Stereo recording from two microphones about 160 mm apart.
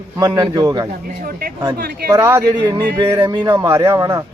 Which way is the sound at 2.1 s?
15° right (ahead or behind).